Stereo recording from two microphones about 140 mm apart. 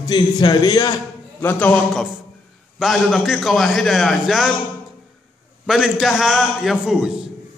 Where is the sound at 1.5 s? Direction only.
10° left (ahead or behind).